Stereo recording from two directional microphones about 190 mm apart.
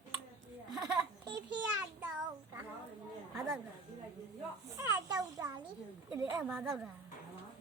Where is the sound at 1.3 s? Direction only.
20° right (ahead or behind).